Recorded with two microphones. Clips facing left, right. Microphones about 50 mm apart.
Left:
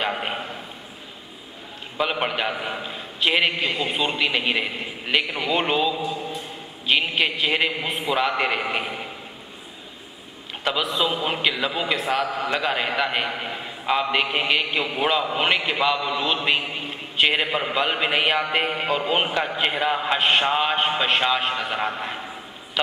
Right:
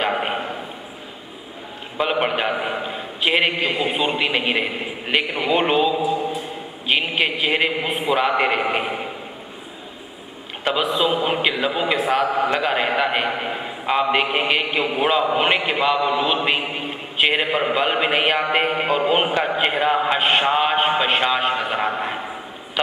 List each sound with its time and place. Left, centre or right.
0.0 s a sound: centre
2.0 s a man's voice: centre
10.6 s a man's voice: centre